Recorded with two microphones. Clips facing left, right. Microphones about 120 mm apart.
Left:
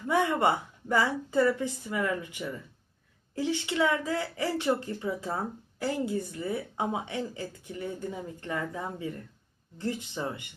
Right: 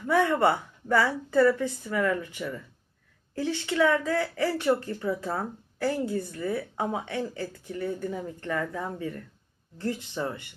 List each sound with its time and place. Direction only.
0.1 s speech: 20° left (ahead or behind)